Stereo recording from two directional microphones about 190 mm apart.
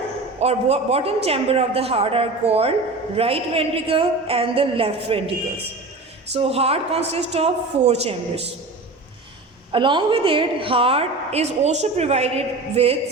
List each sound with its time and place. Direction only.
0.3 s a woman's voice: 35° right (ahead or behind)
6.3 s a woman's voice: 30° right (ahead or behind)
9.7 s a woman's voice: 25° right (ahead or behind)